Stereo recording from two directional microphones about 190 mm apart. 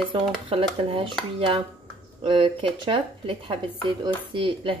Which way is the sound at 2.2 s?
25° right (ahead or behind).